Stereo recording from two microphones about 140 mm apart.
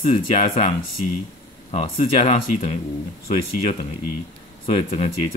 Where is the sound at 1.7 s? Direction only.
50° left (ahead or behind).